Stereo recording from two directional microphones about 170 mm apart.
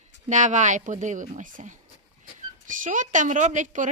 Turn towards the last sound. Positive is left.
turn(degrees=-50)  # may be behind; listen again after turning